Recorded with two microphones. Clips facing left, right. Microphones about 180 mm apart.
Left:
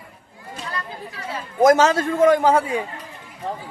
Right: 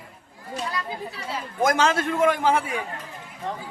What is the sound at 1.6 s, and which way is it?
Speech, 40° left (ahead or behind).